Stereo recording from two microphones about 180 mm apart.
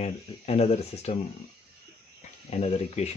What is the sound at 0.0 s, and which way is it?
Speech, 35° left (ahead or behind).